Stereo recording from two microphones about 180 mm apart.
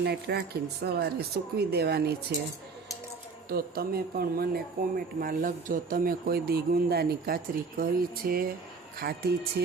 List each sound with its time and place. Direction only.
0.0 s speech: 65° right (ahead or behind)
3.5 s speech: 60° right (ahead or behind)